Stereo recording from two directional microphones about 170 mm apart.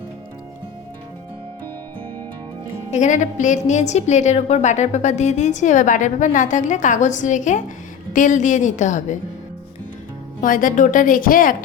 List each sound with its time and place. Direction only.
2.9 s a woman's voice: 45° left (ahead or behind)
10.4 s a woman's voice: 55° left (ahead or behind)